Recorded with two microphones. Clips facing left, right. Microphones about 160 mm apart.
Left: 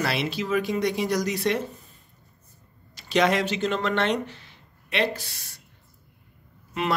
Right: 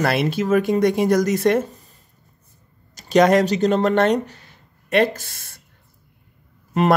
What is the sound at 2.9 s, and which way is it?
Speech, 45° right (ahead or behind).